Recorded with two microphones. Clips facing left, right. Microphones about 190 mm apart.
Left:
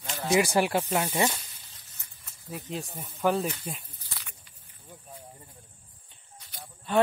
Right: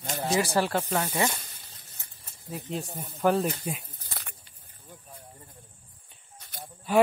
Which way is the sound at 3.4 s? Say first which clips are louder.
Right 3 dB; 45° right (ahead or behind).